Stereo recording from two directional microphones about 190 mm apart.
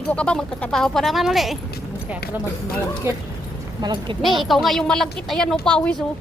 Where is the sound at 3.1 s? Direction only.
15° right (ahead or behind).